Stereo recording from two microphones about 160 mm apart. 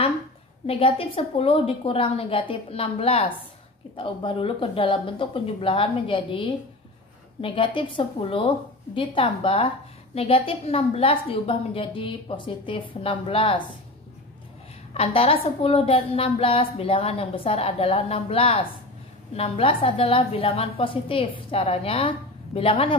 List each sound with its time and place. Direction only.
0.7 s a woman's voice: 35° left (ahead or behind)
15.0 s a woman's voice: 35° left (ahead or behind)